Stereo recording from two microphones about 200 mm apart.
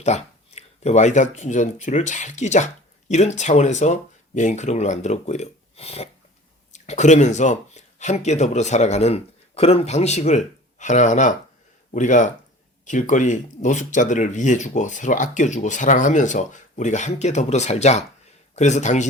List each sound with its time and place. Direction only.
0.0 s speech: 35° left (ahead or behind)